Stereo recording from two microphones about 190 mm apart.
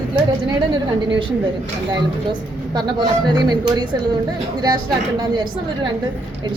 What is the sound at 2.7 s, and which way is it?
A woman's voice, 20° right (ahead or behind).